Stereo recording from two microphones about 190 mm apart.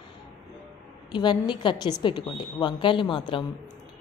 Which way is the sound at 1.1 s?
25° left (ahead or behind).